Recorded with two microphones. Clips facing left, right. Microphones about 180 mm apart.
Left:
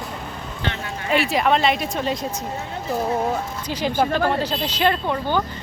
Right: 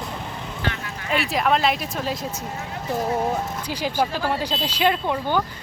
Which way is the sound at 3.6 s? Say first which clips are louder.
Left 4 dB; 10° right (ahead or behind).